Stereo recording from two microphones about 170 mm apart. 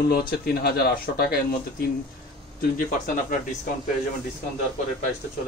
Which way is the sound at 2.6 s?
55° left (ahead or behind).